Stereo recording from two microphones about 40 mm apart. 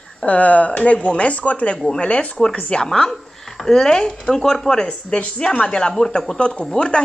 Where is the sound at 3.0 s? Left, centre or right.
Centre; by 7.0 s left.